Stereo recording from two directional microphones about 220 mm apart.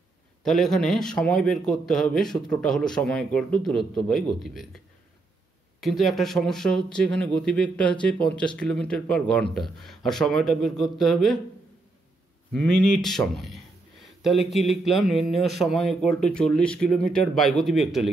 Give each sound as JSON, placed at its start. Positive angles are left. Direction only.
{"t": 0.4, "sound": "a man's voice", "side_deg": 0}
{"t": 12.5, "sound": "a man's voice", "side_deg": 5}